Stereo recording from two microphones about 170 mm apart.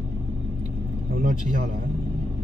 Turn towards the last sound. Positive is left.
turn(degrees=-50)  # may be behind; listen again after turning